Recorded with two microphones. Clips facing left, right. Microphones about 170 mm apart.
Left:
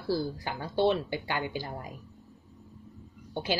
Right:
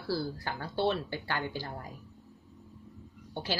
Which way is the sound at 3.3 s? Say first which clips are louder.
Left 4 dB; 15° left (ahead or behind).